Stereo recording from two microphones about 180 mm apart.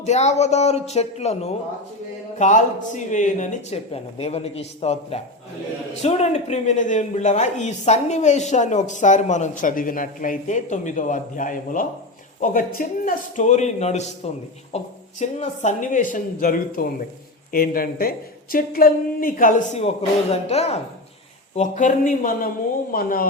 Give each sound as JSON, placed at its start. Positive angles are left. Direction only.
{"t": 0.0, "sound": "speech", "side_deg": 40}